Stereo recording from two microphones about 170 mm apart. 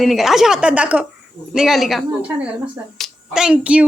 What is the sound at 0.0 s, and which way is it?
A woman's voice, centre (ahead or behind).